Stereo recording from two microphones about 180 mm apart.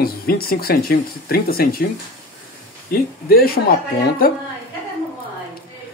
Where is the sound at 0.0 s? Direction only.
55° left (ahead or behind).